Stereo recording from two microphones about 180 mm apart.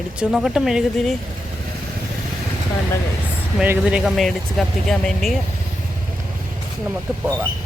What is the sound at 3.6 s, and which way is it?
Speech, 5° right (ahead or behind).